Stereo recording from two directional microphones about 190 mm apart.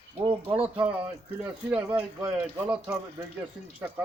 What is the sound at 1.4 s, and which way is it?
A man's voice, 10° right (ahead or behind).